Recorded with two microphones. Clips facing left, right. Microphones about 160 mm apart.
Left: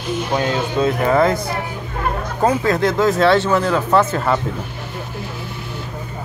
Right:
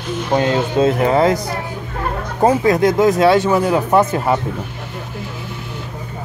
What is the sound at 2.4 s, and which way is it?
Speech, 20° right (ahead or behind).